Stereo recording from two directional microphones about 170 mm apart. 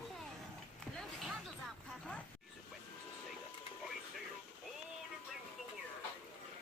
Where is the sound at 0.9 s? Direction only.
Centre (ahead or behind).